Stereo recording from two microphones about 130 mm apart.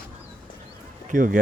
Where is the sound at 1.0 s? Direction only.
90° right.